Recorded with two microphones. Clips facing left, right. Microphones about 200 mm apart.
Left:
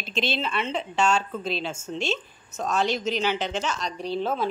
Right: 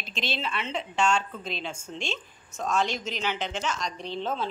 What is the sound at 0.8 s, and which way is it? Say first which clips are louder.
Speech: left 1 dB; 40° left (ahead or behind).